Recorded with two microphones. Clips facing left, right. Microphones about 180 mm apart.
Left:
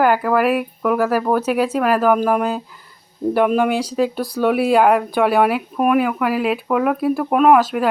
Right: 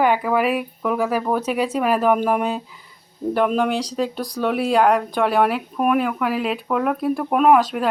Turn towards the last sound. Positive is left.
turn(degrees=5)  # may be behind; listen again after turning